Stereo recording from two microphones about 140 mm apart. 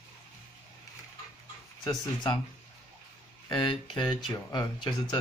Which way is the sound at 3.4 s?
35° left (ahead or behind).